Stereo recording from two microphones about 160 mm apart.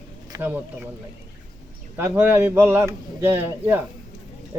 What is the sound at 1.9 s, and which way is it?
A man's voice, 15° right (ahead or behind).